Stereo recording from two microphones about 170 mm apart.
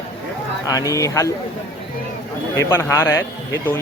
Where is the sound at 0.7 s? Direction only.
20° left (ahead or behind).